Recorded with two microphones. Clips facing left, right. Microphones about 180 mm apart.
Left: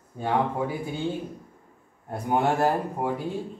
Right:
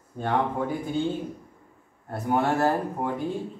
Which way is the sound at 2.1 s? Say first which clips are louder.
Even; 15° left (ahead or behind).